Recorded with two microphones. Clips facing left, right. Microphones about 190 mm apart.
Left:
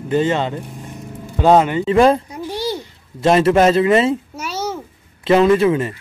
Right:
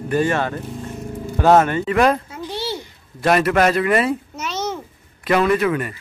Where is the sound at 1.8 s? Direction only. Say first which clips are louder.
Left 4 dB; 25° left (ahead or behind).